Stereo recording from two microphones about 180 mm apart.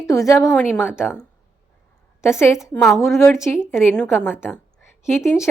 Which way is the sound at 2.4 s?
15° left (ahead or behind).